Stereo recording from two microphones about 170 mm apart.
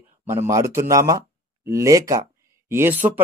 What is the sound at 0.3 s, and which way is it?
Speech, 15° right (ahead or behind).